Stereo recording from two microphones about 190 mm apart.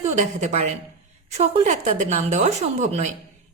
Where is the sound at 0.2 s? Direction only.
40° right (ahead or behind).